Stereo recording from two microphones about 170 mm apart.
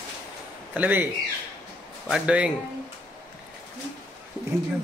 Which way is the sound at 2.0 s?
5° right (ahead or behind).